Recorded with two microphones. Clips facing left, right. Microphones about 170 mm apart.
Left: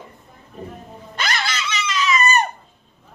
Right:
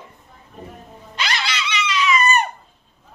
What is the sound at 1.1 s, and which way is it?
Dog, 50° left (ahead or behind).